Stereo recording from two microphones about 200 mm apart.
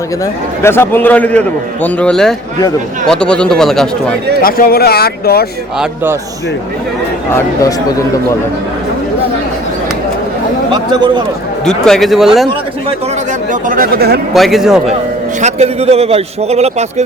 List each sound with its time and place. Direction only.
0.6 s a man's voice: 10° left (ahead or behind)
4.4 s speech: 45° left (ahead or behind)
5.8 s a man's voice: 10° right (ahead or behind)
7.3 s a man's voice: 15° left (ahead or behind)
11.6 s speech: 5° left (ahead or behind)
13.5 s speech: 45° right (ahead or behind)
14.3 s speech: centre (ahead or behind)
15.4 s a man's voice: 35° right (ahead or behind)